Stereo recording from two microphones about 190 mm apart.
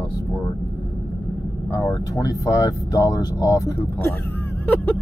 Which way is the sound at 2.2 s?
15° left (ahead or behind).